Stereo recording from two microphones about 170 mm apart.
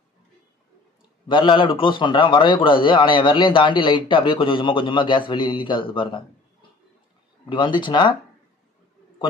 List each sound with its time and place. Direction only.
1.3 s a man's voice: 30° left (ahead or behind)
7.4 s a man's voice: 30° left (ahead or behind)